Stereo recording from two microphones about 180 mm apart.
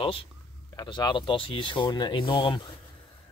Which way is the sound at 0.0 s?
30° left (ahead or behind).